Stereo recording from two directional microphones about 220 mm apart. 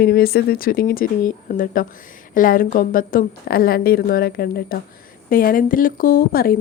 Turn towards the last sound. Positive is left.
turn(degrees=45)  # may be behind; listen again after turning